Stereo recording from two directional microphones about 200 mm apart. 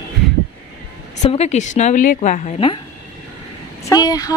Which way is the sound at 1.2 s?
35° left (ahead or behind).